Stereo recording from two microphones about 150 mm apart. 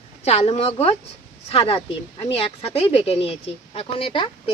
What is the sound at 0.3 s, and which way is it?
Speech, 45° left (ahead or behind).